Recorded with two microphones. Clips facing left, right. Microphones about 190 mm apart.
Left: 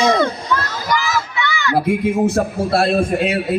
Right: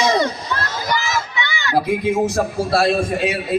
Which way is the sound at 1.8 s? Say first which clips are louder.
Left 2 dB; 55° left (ahead or behind).